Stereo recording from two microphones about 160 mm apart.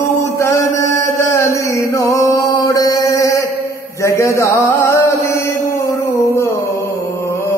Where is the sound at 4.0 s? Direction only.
20° left (ahead or behind).